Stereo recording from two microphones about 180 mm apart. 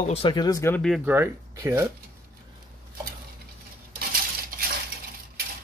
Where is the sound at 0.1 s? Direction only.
25° left (ahead or behind); by 1.0 s 5° left (ahead or behind).